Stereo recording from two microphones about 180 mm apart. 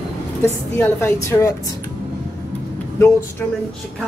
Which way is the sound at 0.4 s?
10° left (ahead or behind).